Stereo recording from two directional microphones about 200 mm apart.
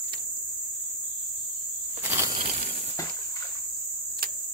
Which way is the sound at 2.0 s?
15° right (ahead or behind).